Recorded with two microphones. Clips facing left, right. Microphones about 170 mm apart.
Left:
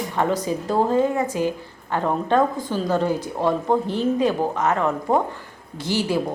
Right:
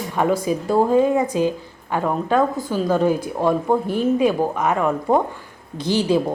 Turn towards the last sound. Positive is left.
turn(degrees=-15)  # may be behind; listen again after turning